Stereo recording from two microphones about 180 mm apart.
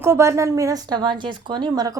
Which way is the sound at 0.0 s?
15° right (ahead or behind).